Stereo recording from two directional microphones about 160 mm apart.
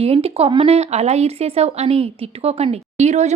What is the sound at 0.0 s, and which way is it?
A woman's voice, 40° right (ahead or behind).